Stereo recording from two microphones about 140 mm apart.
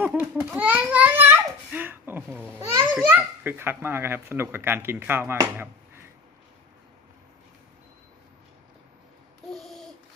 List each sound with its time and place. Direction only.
0.0 s a sound: 10° right (ahead or behind)
3.0 s a child's voice: 15° right (ahead or behind)
9.5 s babbling: centre (ahead or behind)